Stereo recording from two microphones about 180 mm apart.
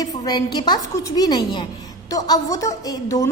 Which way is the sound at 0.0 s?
20° left (ahead or behind).